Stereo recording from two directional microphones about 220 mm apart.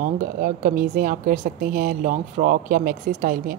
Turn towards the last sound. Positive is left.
turn(degrees=-40)  # may be behind; listen again after turning